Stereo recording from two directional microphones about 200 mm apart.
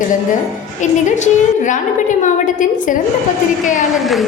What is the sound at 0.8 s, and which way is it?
A woman's voice, 35° left (ahead or behind).